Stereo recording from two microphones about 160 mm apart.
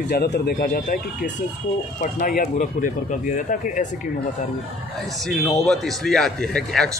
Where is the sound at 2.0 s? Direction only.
60° left (ahead or behind).